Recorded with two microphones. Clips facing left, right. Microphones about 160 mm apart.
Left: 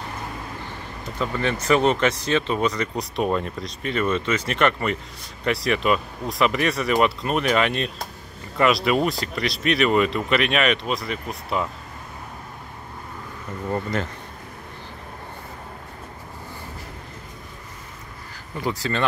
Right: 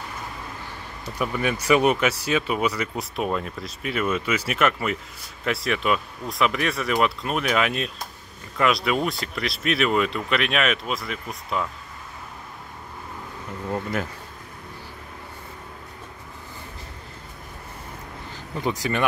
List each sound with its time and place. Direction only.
1.1 s speech: 10° right (ahead or behind)
13.7 s speech: 5° right (ahead or behind)
18.6 s speech: 20° right (ahead or behind)